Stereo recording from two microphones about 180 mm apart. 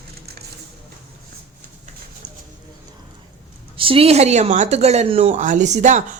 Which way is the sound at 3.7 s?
30° right (ahead or behind).